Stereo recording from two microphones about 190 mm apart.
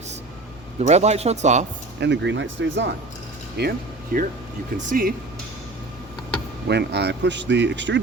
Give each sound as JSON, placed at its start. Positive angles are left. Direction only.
{"t": 0.8, "sound": "speech", "side_deg": -35}
{"t": 2.0, "sound": "speech", "side_deg": -65}
{"t": 3.6, "sound": "speech", "side_deg": -50}
{"t": 6.7, "sound": "speech", "side_deg": -65}